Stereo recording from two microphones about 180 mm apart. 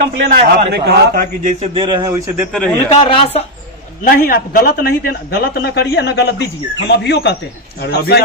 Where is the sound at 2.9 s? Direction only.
30° left (ahead or behind).